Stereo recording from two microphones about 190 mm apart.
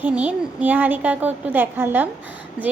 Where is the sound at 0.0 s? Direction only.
5° right (ahead or behind).